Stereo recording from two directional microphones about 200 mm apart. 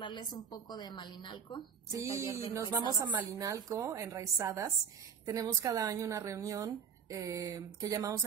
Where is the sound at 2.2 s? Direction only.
15° left (ahead or behind).